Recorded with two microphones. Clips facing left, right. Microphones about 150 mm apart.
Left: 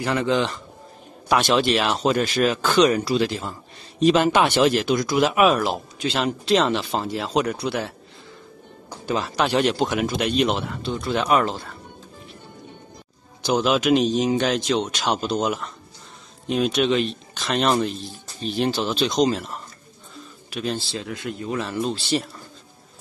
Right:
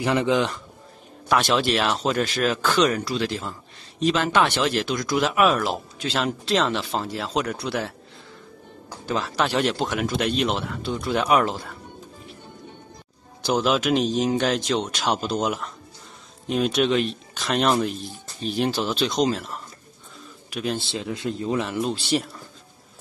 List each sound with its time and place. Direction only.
0.0 s speech: 15° right (ahead or behind)
0.3 s speech: 5° right (ahead or behind)
9.0 s speech: 5° left (ahead or behind)
13.4 s speech: 5° right (ahead or behind)
20.9 s speech: 25° right (ahead or behind)
22.1 s speech: 5° right (ahead or behind)